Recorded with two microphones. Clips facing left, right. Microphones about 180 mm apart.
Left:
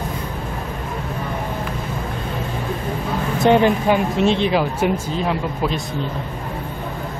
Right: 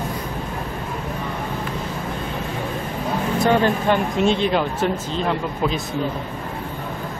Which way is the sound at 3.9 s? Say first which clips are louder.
Left 2 dB; centre (ahead or behind).